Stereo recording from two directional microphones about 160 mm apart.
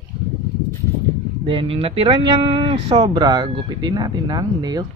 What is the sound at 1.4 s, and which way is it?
Speech, 35° right (ahead or behind).